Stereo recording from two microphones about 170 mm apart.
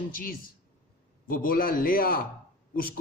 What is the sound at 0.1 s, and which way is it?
A man's voice, 55° left (ahead or behind).